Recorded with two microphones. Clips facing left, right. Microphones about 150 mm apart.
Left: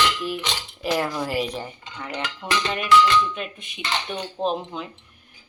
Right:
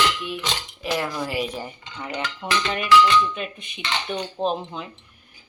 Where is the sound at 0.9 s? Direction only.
5° left (ahead or behind).